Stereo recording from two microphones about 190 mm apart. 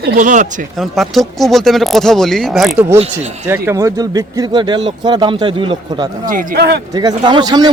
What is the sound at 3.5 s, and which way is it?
Speech, 15° right (ahead or behind).